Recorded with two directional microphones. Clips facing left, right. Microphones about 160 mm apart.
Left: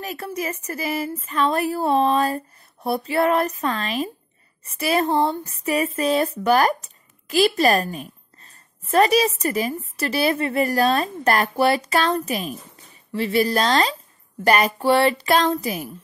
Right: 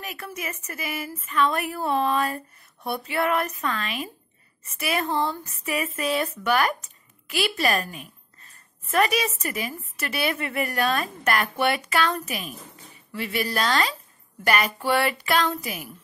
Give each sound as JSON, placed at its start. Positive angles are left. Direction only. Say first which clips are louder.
{"t": 0.0, "sound": "speech", "louder": "left 6 dB", "side_deg": 35}